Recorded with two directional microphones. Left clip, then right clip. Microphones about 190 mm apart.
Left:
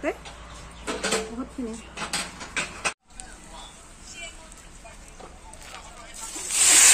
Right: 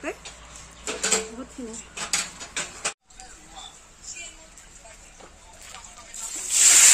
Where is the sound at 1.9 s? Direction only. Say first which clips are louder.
Right 4 dB; 60° right (ahead or behind).